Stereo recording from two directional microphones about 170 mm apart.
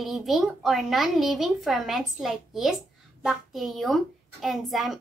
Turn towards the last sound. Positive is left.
turn(degrees=0)  # may be behind; listen again after turning